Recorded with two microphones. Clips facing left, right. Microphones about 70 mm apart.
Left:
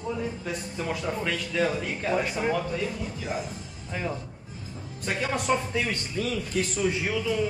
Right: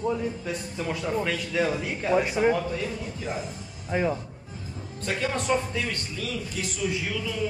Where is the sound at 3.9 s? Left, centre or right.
Right.